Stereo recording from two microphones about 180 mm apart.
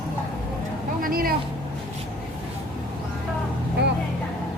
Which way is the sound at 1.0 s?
55° right (ahead or behind).